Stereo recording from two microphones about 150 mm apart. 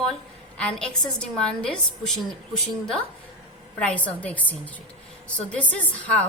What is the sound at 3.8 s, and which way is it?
A woman's voice, 10° left (ahead or behind).